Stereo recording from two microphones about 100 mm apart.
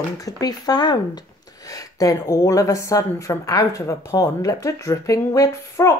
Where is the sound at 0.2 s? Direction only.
40° left (ahead or behind).